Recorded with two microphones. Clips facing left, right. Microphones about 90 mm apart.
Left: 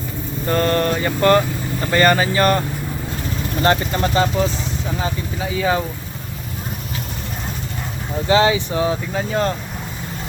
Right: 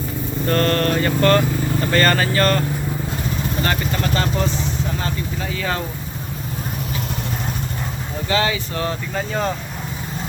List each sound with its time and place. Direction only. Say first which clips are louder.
0.4 s vehicle: left 1 dB; 15° left (ahead or behind)
3.6 s speech: left 8 dB; 25° left (ahead or behind)
4.2 s vehicle: left 3 dB; 15° left (ahead or behind)
8.3 s speech: left 6 dB; 25° left (ahead or behind)
8.8 s speech: left 3 dB; 5° left (ahead or behind)